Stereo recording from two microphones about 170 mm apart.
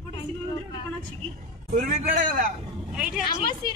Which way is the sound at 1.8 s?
50° right (ahead or behind).